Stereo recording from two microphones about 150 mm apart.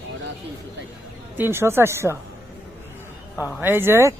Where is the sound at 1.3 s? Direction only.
15° right (ahead or behind).